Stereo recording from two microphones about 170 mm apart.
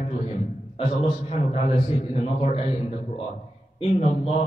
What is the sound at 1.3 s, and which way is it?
A man's voice, 35° left (ahead or behind).